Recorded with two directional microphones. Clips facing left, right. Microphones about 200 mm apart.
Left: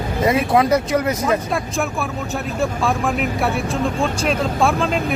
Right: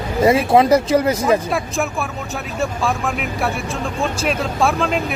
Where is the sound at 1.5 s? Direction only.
Centre (ahead or behind).